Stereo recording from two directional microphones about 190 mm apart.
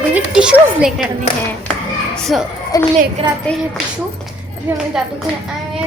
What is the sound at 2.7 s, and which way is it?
Speech, 20° left (ahead or behind).